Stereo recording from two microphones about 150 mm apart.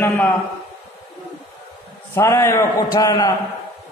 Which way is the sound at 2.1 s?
15° left (ahead or behind).